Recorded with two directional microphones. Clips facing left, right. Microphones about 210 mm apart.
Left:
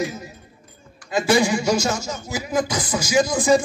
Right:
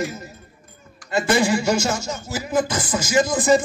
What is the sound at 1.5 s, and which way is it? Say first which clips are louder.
Speech: even; 5° right (ahead or behind).